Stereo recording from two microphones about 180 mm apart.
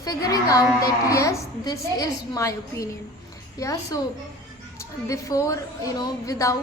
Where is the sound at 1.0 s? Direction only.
15° left (ahead or behind).